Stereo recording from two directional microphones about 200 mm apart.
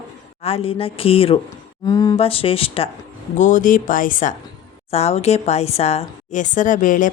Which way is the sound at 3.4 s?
40° left (ahead or behind).